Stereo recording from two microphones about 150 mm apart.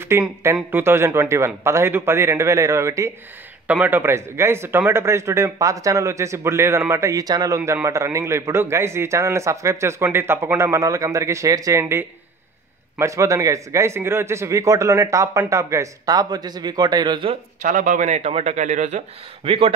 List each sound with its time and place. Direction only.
0.1 s a man's voice: 20° right (ahead or behind); by 17.4 s 35° right (ahead or behind)
17.6 s speech: 55° right (ahead or behind); by 19.7 s 40° right (ahead or behind)